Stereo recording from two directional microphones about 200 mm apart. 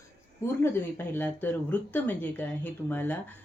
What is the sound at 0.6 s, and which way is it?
Speech, 10° left (ahead or behind).